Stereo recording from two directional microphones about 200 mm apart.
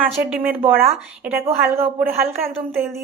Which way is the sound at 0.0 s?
10° right (ahead or behind).